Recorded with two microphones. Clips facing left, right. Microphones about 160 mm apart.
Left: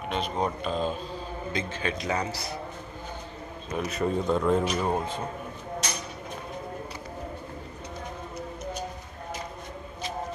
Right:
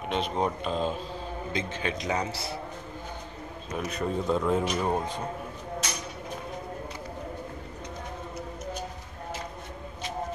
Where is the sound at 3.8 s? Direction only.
Centre (ahead or behind).